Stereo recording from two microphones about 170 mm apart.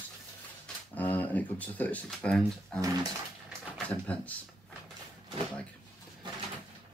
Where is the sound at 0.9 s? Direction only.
10° left (ahead or behind).